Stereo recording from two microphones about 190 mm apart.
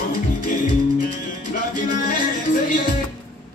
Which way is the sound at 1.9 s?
45° left (ahead or behind).